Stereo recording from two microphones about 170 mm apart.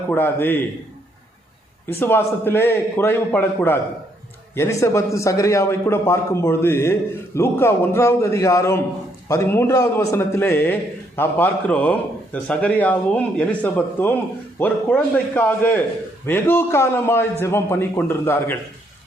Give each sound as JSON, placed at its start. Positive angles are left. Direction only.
{"t": 0.1, "sound": "a man's voice", "side_deg": 10}
{"t": 1.9, "sound": "a man's voice", "side_deg": 10}